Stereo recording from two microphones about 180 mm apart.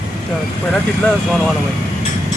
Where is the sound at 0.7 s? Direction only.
5° left (ahead or behind).